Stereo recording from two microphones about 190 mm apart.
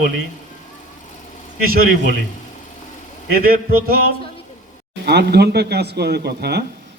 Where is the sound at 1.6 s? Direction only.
50° right (ahead or behind).